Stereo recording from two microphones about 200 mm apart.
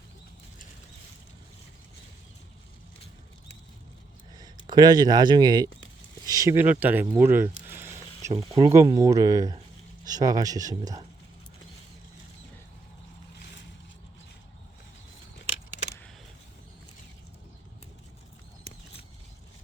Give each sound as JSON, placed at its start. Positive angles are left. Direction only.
{"t": 4.4, "sound": "speech", "side_deg": -20}
{"t": 7.7, "sound": "a sound", "side_deg": -10}
{"t": 8.3, "sound": "speech", "side_deg": -20}